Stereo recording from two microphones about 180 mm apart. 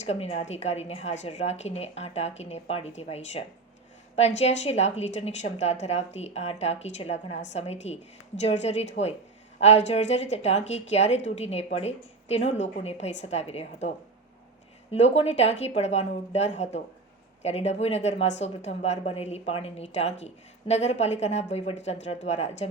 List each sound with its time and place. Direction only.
0.0 s a woman's voice: 35° left (ahead or behind)
14.9 s a woman's voice: 35° left (ahead or behind)